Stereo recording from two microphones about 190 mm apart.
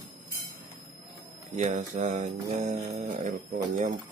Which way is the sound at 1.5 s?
35° right (ahead or behind).